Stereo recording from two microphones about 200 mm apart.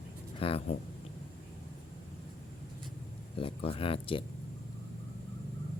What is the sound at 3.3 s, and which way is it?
Speech, 30° left (ahead or behind).